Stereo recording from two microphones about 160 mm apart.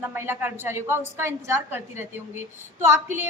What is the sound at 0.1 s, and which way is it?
A woman's voice, 15° right (ahead or behind).